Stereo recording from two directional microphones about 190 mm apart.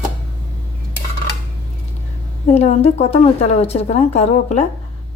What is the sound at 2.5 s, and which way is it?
A woman's voice, 35° left (ahead or behind).